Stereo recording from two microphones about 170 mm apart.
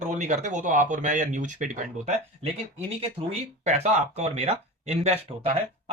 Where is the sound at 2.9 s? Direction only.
35° right (ahead or behind).